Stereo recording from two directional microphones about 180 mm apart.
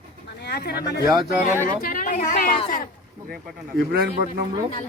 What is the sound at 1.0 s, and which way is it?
Speech, 20° right (ahead or behind).